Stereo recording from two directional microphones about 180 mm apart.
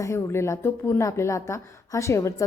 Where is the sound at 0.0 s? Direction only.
15° left (ahead or behind).